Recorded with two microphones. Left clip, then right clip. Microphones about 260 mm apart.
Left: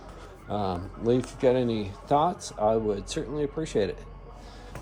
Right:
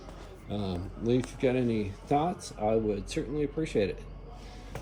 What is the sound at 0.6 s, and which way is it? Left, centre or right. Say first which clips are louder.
Speech: left 6 dB; left.